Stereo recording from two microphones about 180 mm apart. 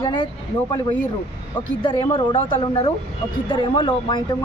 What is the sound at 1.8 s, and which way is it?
A woman's voice, 30° left (ahead or behind).